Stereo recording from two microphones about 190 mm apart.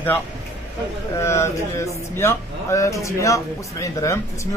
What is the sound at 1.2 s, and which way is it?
Speech, 15° left (ahead or behind).